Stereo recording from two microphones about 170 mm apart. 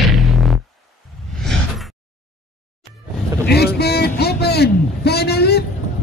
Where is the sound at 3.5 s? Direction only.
70° left (ahead or behind).